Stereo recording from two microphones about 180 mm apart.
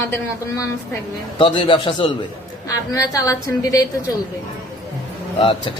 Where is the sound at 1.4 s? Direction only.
30° left (ahead or behind).